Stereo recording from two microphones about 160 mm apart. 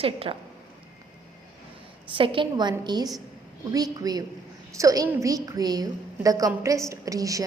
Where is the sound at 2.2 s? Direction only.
30° right (ahead or behind).